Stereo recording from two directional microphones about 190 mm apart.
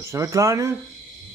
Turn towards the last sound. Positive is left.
turn(degrees=-15)  # may be behind; listen again after turning